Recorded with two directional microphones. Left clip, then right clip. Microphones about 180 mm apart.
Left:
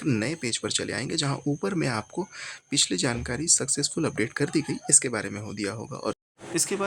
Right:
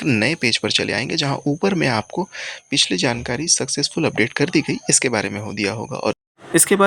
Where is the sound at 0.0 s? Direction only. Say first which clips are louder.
Right 10 dB; 20° right (ahead or behind).